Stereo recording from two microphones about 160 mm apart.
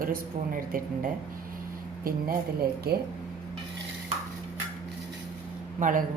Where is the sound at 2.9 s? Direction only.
80° right.